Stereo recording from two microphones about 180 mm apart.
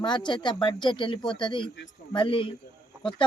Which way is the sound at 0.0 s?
25° left (ahead or behind).